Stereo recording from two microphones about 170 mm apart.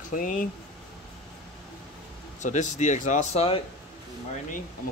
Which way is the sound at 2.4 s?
45° left (ahead or behind).